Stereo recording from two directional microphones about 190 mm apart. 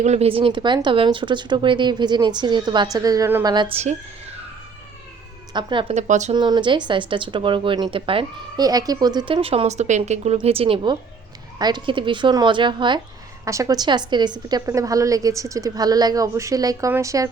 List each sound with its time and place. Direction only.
0.0 s speech: 35° right (ahead or behind); by 3.5 s 15° right (ahead or behind)
3.5 s speech: 25° right (ahead or behind)
5.5 s speech: 25° right (ahead or behind)
5.9 s speech: 40° right (ahead or behind)
6.3 s a woman's voice: 25° right (ahead or behind)